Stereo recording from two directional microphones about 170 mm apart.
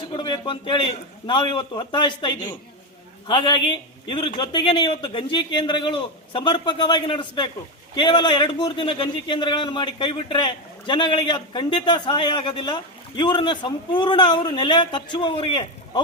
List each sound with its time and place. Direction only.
0.2 s a man's voice: 30° left (ahead or behind)